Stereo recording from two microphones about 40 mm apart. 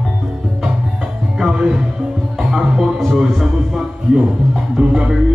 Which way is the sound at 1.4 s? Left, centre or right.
Centre.